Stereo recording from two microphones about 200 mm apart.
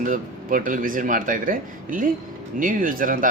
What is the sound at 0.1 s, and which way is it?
Speech, 45° right (ahead or behind).